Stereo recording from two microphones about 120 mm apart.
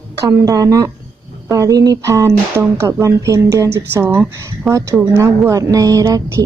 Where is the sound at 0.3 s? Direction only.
25° right (ahead or behind); by 5.1 s 5° right (ahead or behind).